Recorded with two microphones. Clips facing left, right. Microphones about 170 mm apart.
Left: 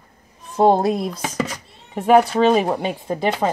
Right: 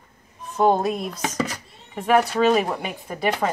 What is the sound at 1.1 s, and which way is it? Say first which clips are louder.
Dishes: left 1 dB; 10° left (ahead or behind).